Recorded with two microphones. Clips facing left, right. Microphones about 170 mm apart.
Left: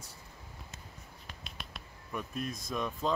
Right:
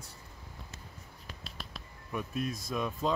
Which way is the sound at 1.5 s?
Centre (ahead or behind).